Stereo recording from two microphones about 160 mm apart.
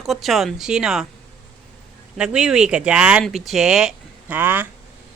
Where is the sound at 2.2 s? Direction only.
5° right (ahead or behind).